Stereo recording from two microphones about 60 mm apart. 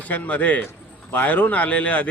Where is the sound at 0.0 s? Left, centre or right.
Left.